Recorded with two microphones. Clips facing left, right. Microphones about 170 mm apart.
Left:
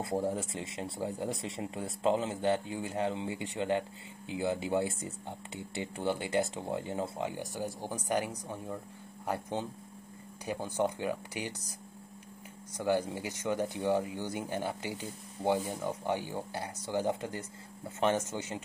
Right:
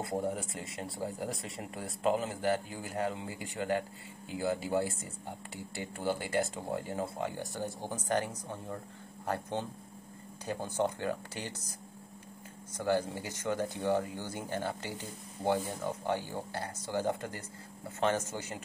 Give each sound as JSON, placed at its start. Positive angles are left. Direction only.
{"t": 0.3, "sound": "speech", "side_deg": 25}
{"t": 12.7, "sound": "speech", "side_deg": 15}